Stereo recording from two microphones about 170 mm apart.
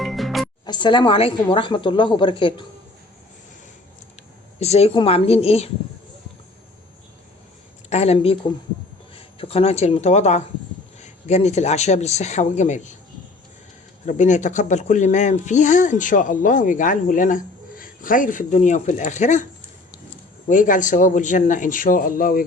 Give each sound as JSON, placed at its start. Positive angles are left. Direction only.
{"t": 0.0, "sound": "music", "side_deg": 0}
{"t": 0.6, "sound": "a woman's voice", "side_deg": 25}
{"t": 4.6, "sound": "speech", "side_deg": 40}
{"t": 7.9, "sound": "speech", "side_deg": 40}
{"t": 14.0, "sound": "speech", "side_deg": 45}
{"t": 20.5, "sound": "speech", "side_deg": 50}